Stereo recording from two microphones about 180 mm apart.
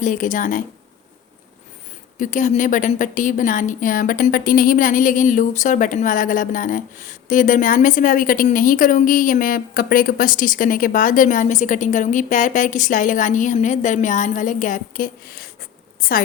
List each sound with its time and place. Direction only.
0.0 s a woman's voice: 45° left (ahead or behind)
2.1 s a woman's voice: 45° left (ahead or behind)
16.0 s a sound: 50° left (ahead or behind)